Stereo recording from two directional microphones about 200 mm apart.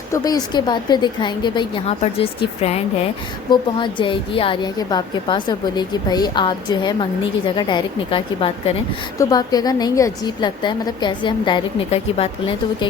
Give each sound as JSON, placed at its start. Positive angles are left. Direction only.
{"t": 0.1, "sound": "a woman's voice", "side_deg": 20}